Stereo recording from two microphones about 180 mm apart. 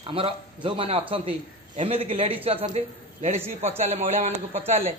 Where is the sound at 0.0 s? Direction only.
30° right (ahead or behind).